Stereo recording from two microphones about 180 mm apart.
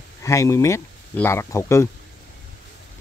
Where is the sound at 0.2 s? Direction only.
15° left (ahead or behind).